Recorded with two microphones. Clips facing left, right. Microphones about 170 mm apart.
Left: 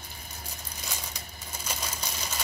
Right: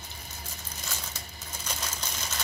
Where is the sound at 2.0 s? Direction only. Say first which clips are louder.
Left 1 dB; 10° left (ahead or behind).